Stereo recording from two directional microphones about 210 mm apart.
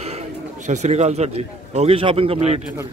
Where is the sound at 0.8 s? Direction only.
30° right (ahead or behind).